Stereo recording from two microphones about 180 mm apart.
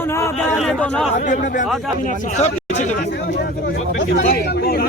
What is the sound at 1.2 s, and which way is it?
Speech, 45° left (ahead or behind).